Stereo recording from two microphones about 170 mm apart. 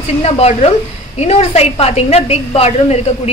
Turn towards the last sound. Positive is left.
turn(degrees=35)  # may be behind; listen again after turning